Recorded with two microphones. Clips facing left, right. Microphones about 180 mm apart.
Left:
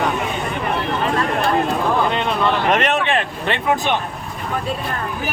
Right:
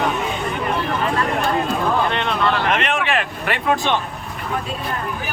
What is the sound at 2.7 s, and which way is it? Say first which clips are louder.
Vehicle: left 3 dB; 40° left (ahead or behind).